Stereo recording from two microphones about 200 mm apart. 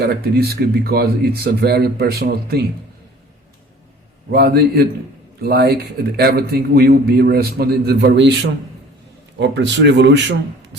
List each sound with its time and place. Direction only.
0.0 s a man's voice: 55° right (ahead or behind)
4.3 s a man's voice: 55° right (ahead or behind)